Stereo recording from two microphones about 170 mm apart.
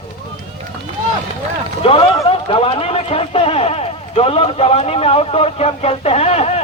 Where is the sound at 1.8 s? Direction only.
35° left (ahead or behind).